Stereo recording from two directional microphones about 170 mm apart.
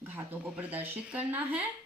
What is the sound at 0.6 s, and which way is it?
A woman's voice, 10° right (ahead or behind).